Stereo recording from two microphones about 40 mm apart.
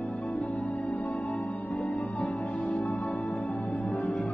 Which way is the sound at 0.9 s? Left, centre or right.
Left.